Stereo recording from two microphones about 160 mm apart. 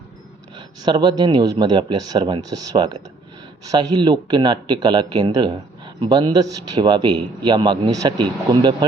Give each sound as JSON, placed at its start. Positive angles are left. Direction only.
{"t": 0.5, "sound": "speech", "side_deg": -25}